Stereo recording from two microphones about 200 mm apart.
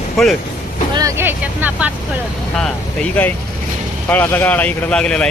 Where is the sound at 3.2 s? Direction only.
5° left (ahead or behind).